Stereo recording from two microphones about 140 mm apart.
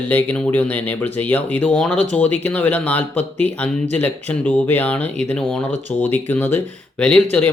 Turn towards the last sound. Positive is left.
turn(degrees=10)  # may be behind; listen again after turning